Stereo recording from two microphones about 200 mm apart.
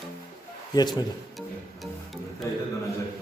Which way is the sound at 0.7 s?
20° left (ahead or behind).